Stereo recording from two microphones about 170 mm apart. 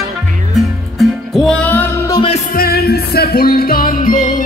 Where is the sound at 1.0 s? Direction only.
Centre (ahead or behind).